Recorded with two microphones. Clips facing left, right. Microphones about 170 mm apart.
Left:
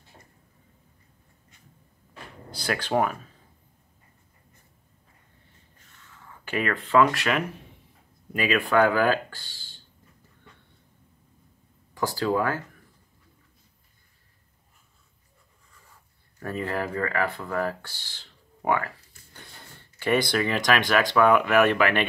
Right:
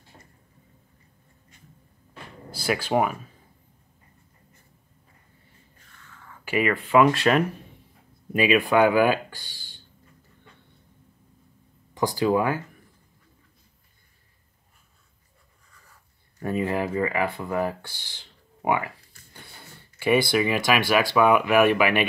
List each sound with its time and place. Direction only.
2.5 s speech: 5° right (ahead or behind)
6.4 s speech: 10° right (ahead or behind)
7.1 s speech: 30° right (ahead or behind)
8.3 s speech: 15° right (ahead or behind)
11.9 s speech: 15° right (ahead or behind)
16.3 s speech: 15° right (ahead or behind)